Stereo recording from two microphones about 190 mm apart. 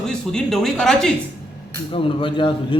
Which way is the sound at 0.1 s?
5° left (ahead or behind).